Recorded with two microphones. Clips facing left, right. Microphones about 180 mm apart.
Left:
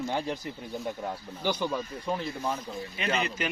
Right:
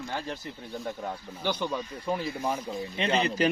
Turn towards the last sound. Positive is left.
turn(degrees=-35)  # may be behind; listen again after turning